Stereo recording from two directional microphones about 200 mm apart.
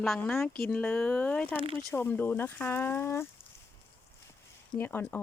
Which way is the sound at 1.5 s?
25° right (ahead or behind).